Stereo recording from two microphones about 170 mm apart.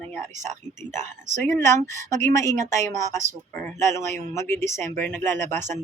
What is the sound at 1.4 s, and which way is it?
Speech, 15° left (ahead or behind).